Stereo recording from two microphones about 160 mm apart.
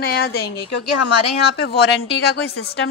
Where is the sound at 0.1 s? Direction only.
85° left.